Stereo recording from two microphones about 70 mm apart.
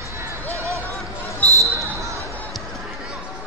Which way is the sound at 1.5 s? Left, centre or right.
Right.